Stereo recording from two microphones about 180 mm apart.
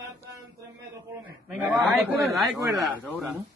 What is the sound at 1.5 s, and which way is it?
A man's voice, 10° right (ahead or behind).